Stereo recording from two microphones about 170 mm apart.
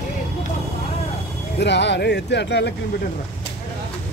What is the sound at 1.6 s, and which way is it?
Speech, 90° left.